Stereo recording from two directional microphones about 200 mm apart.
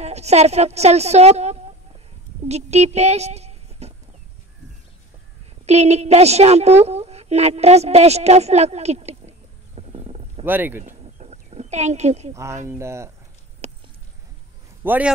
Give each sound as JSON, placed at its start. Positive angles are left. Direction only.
{"t": 0.0, "sound": "a woman's voice", "side_deg": -35}
{"t": 5.7, "sound": "a woman's voice", "side_deg": -35}
{"t": 9.8, "sound": "wild animals", "side_deg": -30}
{"t": 10.4, "sound": "speech", "side_deg": -10}
{"t": 11.1, "sound": "a sound", "side_deg": -35}
{"t": 12.6, "sound": "speech", "side_deg": -15}
{"t": 13.6, "sound": "a sound", "side_deg": -35}
{"t": 14.8, "sound": "a man's voice", "side_deg": -10}